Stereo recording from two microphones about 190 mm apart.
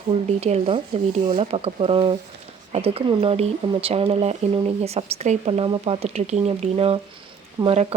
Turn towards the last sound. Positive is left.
turn(degrees=-15)  # may be behind; listen again after turning